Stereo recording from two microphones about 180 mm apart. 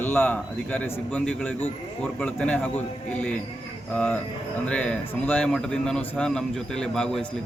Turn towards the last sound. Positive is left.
turn(degrees=5)  # may be behind; listen again after turning